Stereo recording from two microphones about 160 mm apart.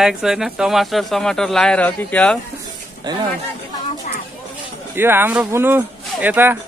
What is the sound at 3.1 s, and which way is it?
Speech, 25° right (ahead or behind).